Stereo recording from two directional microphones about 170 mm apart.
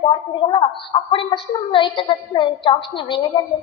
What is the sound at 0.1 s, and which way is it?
A woman's voice, 30° left (ahead or behind).